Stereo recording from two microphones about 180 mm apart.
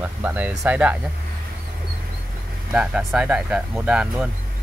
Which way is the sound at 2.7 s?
5° right (ahead or behind).